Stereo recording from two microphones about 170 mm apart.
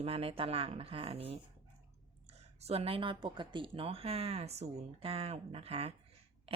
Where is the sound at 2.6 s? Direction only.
35° right (ahead or behind).